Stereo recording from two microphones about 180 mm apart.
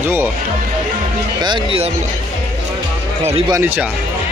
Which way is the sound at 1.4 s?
30° right (ahead or behind).